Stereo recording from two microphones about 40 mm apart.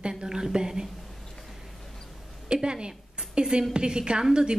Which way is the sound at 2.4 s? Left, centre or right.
Right.